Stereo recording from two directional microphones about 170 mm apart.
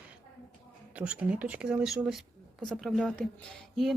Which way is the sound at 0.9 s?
5° right (ahead or behind).